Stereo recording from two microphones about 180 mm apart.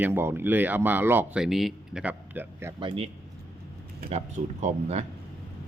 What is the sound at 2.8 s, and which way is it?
Speech, 25° right (ahead or behind).